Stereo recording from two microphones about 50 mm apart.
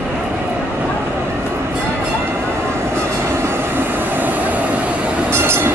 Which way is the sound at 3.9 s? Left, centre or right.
Right.